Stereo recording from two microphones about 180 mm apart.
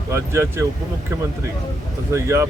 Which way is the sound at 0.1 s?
15° right (ahead or behind).